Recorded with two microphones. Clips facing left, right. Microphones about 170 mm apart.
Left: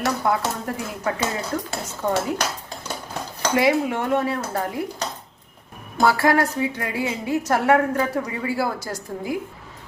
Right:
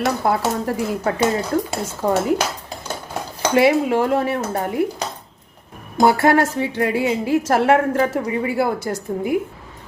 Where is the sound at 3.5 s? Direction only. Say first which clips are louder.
Right 5 dB; 30° right (ahead or behind).